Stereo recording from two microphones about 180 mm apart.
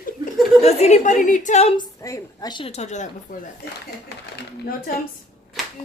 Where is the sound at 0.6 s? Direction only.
40° left (ahead or behind).